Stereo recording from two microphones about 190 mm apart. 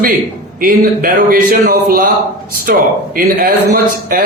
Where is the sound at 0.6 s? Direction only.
50° right (ahead or behind).